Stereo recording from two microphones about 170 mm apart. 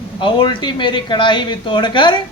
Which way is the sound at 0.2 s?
25° left (ahead or behind).